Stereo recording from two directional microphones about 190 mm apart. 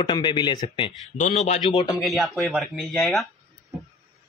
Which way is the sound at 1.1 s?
40° left (ahead or behind).